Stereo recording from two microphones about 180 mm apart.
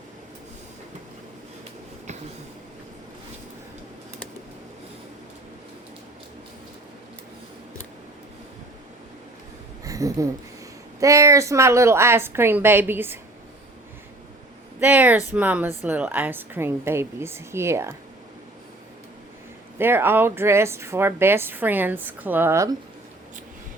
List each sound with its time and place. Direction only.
9.8 s a sound: 20° right (ahead or behind)
11.0 s speech: 15° right (ahead or behind)
14.8 s speech: 10° right (ahead or behind)
19.8 s speech: 10° right (ahead or behind)